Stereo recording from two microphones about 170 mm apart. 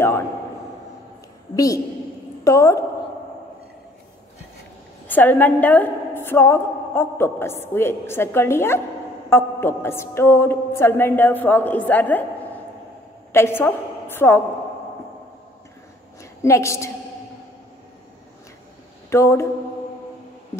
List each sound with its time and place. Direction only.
1.5 s a woman's voice: 20° left (ahead or behind)
5.0 s a woman's voice: 10° left (ahead or behind)
13.3 s a woman's voice: 15° left (ahead or behind)
16.2 s a woman's voice: 15° left (ahead or behind)
19.0 s speech: 15° left (ahead or behind)